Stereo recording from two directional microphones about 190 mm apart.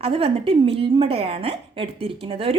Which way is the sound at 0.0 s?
30° right (ahead or behind).